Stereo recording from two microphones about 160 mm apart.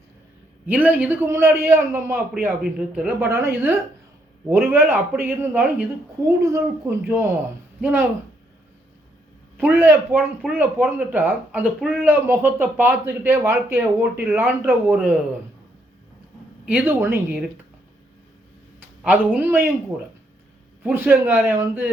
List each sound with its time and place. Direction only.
0.7 s speech: 10° right (ahead or behind)
9.6 s speech: 15° right (ahead or behind)
16.6 s speech: 10° right (ahead or behind)
19.0 s speech: 10° right (ahead or behind)
20.8 s speech: 10° right (ahead or behind)